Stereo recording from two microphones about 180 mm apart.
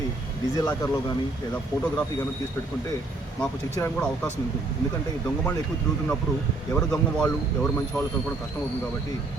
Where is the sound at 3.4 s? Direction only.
5° left (ahead or behind).